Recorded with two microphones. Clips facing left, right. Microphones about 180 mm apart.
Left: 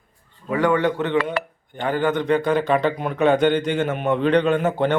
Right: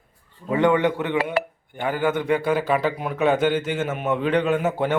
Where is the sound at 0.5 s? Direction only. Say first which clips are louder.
Even; 20° right (ahead or behind).